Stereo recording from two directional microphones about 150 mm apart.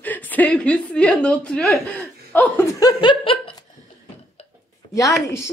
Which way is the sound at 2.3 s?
10° left (ahead or behind).